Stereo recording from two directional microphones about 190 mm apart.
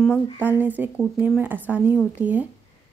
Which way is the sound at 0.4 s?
10° right (ahead or behind).